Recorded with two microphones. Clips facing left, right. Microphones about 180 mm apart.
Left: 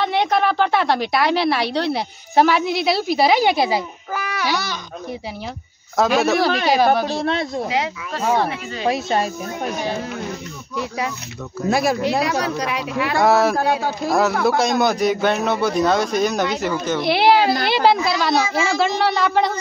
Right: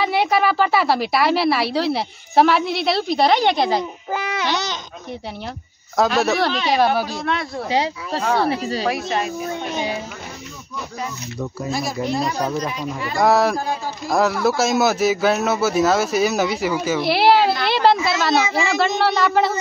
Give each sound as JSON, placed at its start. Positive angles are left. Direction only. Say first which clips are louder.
{"t": 0.0, "sound": "a woman's voice", "louder": "even", "side_deg": -5}
{"t": 4.1, "sound": "babbling", "louder": "right 1 dB", "side_deg": -20}
{"t": 5.9, "sound": "a woman's voice", "louder": "left 1 dB", "side_deg": 0}
{"t": 7.2, "sound": "speech", "louder": "left 3 dB", "side_deg": 30}
{"t": 7.7, "sound": "speech", "louder": "right 2 dB", "side_deg": -30}
{"t": 8.8, "sound": "speech", "louder": "left 6 dB", "side_deg": 30}
{"t": 11.7, "sound": "speech", "louder": "left 6 dB", "side_deg": 65}
{"t": 13.2, "sound": "a woman's voice", "louder": "even", "side_deg": 0}
{"t": 13.6, "sound": "speech", "louder": "left 5 dB", "side_deg": 70}
{"t": 14.0, "sound": "a woman's voice", "louder": "even", "side_deg": 0}